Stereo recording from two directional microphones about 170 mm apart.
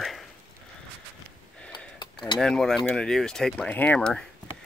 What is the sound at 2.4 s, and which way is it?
Speech, 5° left (ahead or behind).